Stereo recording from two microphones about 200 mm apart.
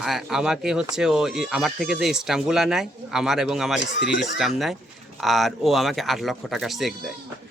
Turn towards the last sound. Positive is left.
turn(degrees=0)  # may be behind; listen again after turning